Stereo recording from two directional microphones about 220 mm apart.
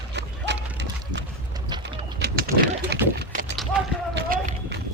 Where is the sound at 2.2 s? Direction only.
45° right (ahead or behind).